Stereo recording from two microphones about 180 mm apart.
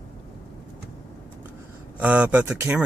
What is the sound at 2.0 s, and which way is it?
Speech, 5° right (ahead or behind).